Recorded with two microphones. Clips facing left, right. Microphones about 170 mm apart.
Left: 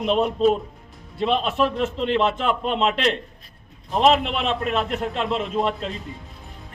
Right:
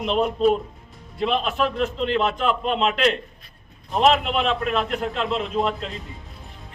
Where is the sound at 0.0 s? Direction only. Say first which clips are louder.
Left 1 dB; centre (ahead or behind).